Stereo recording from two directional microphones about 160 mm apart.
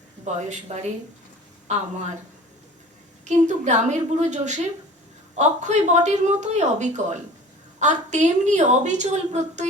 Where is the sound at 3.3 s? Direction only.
50° right (ahead or behind).